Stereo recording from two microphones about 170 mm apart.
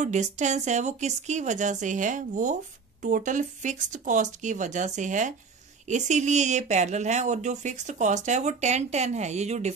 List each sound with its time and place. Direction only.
0.0 s speech: 45° right (ahead or behind)